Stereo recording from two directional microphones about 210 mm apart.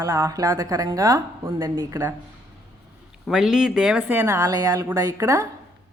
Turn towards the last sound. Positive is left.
turn(degrees=-15)  # may be behind; listen again after turning